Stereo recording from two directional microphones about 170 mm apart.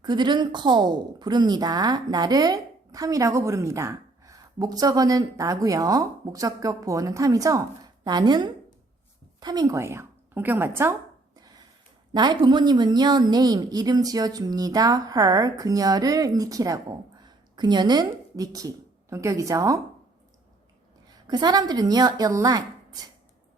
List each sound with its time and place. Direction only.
0.0 s a woman's voice: 25° right (ahead or behind)
11.3 s a sound: 25° right (ahead or behind)
12.1 s a woman's voice: 25° right (ahead or behind)
21.1 s speech: 25° right (ahead or behind)